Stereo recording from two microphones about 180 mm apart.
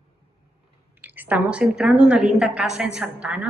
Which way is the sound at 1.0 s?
10° right (ahead or behind).